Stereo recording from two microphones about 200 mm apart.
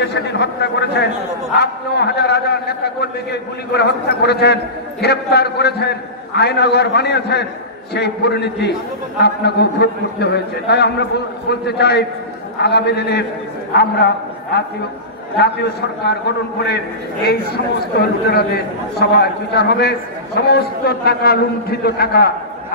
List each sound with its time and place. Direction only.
0.0 s a man's voice: 60° left (ahead or behind)
18.9 s a man's voice: 55° left (ahead or behind)